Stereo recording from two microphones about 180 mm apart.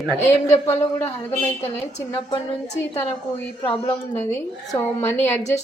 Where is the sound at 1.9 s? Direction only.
40° left (ahead or behind).